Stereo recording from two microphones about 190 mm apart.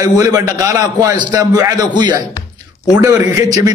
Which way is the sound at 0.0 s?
20° right (ahead or behind).